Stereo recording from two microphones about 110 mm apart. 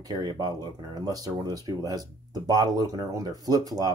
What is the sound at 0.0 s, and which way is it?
Speech, 40° right (ahead or behind).